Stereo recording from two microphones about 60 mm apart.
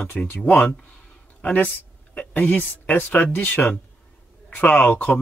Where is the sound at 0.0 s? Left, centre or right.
Left.